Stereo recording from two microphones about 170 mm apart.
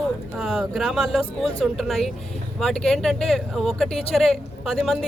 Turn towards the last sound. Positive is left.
turn(degrees=0)  # may be behind; listen again after turning